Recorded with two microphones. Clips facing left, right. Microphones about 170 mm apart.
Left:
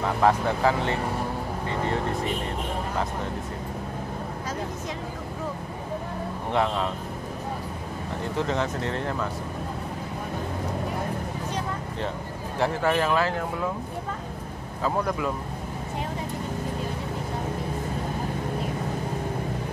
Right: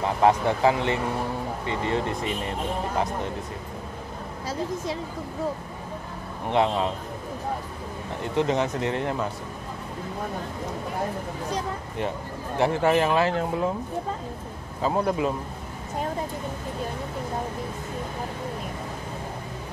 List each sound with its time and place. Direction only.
0.2 s speech: 20° right (ahead or behind)
6.5 s speech: 20° right (ahead or behind)
8.4 s speech: 15° right (ahead or behind)
12.5 s speech: 20° right (ahead or behind)
14.8 s speech: 25° right (ahead or behind)